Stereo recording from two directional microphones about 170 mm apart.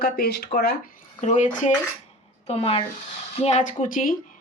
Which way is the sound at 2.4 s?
35° left (ahead or behind).